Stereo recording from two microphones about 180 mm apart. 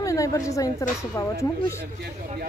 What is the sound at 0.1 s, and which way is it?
Speech, 20° left (ahead or behind).